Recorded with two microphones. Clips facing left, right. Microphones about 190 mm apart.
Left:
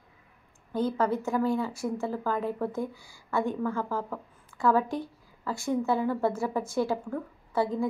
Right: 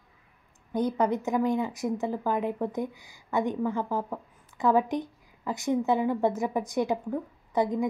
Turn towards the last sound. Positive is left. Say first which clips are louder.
# right 1 dB
turn(degrees=-15)  # may be behind; listen again after turning